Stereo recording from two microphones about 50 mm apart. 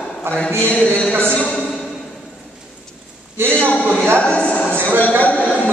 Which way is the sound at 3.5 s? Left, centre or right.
Left.